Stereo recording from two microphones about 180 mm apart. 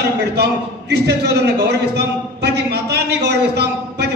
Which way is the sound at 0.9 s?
65° right (ahead or behind).